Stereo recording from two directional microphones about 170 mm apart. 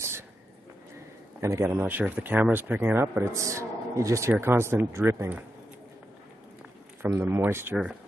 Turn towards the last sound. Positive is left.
turn(degrees=-10)  # may be behind; listen again after turning